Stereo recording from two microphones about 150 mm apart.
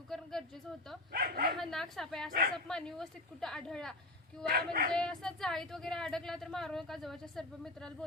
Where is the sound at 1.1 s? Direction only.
75° right (ahead or behind).